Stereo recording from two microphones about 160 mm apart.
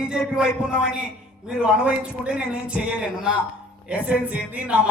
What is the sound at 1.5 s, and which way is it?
Speech, 5° right (ahead or behind).